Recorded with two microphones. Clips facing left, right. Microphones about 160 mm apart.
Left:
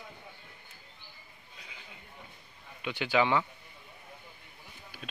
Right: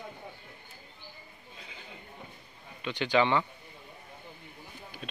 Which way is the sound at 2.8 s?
10° left (ahead or behind).